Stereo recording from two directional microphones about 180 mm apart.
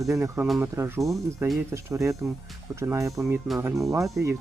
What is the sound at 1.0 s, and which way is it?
Speech, centre (ahead or behind).